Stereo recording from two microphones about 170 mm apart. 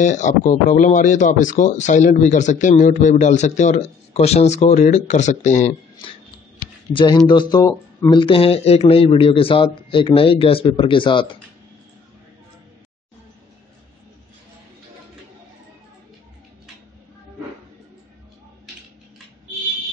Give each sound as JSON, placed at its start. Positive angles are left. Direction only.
{"t": 0.0, "sound": "speech", "side_deg": 45}
{"t": 6.9, "sound": "speech", "side_deg": 25}